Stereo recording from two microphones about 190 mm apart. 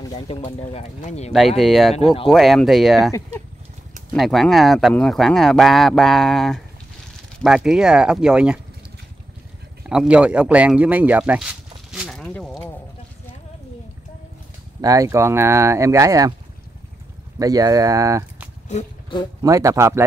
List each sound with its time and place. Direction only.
0.1 s speech: 35° left (ahead or behind)
1.6 s speech: centre (ahead or behind)
4.2 s speech: centre (ahead or behind)
9.8 s speech: 5° right (ahead or behind)
14.8 s speech: 20° right (ahead or behind)
17.4 s speech: 20° right (ahead or behind)
18.7 s a sound: 35° left (ahead or behind)
19.4 s speech: 15° right (ahead or behind)